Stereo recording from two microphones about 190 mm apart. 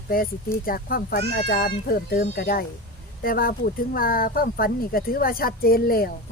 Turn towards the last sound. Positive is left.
turn(degrees=50)  # may be behind; listen again after turning